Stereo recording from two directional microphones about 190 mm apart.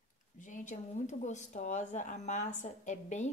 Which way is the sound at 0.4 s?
40° left (ahead or behind).